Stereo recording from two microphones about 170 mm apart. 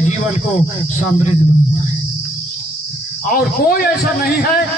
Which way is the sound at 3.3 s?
60° left (ahead or behind).